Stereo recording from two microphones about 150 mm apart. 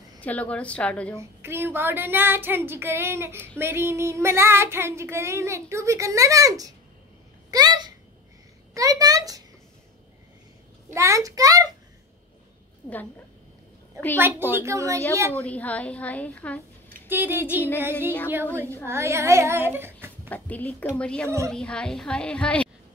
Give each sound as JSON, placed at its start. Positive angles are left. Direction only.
{"t": 0.2, "sound": "a woman's voice", "side_deg": 10}
{"t": 1.1, "sound": "speech", "side_deg": -15}
{"t": 7.5, "sound": "a sound", "side_deg": -25}
{"t": 10.9, "sound": "a sound", "side_deg": -20}
{"t": 14.1, "sound": "a woman's voice", "side_deg": -15}
{"t": 15.3, "sound": "a woman's voice", "side_deg": 10}
{"t": 17.1, "sound": "speech", "side_deg": -15}
{"t": 20.2, "sound": "a woman's voice", "side_deg": 10}